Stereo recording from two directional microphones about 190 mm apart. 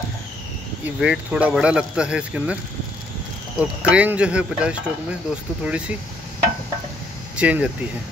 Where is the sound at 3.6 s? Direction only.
5° right (ahead or behind).